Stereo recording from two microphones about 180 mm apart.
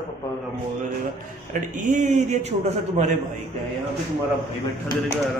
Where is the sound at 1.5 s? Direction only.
45° right (ahead or behind).